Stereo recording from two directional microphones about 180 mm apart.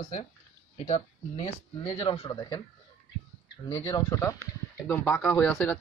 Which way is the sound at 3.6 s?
20° left (ahead or behind).